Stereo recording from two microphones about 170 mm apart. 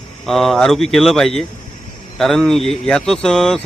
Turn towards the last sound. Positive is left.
turn(degrees=0)  # may be behind; listen again after turning